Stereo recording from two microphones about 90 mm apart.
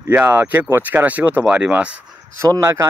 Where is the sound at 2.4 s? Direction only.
35° right (ahead or behind).